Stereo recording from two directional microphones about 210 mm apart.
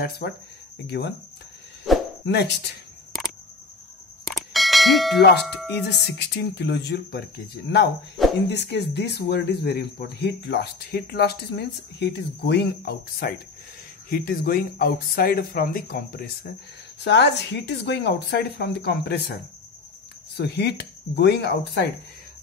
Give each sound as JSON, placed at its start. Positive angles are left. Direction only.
{"t": 0.2, "sound": "speech", "side_deg": 50}
{"t": 1.9, "sound": "a sound", "side_deg": 0}
{"t": 2.2, "sound": "speech", "side_deg": 55}
{"t": 4.3, "sound": "bell", "side_deg": 0}
{"t": 5.9, "sound": "speech", "side_deg": 55}
{"t": 20.3, "sound": "speech", "side_deg": 50}